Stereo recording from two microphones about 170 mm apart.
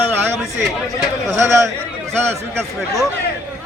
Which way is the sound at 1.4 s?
15° right (ahead or behind).